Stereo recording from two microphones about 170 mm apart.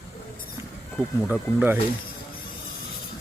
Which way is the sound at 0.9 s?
5° right (ahead or behind).